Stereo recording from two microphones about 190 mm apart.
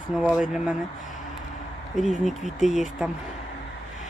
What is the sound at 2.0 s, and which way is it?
Speech, 40° left (ahead or behind).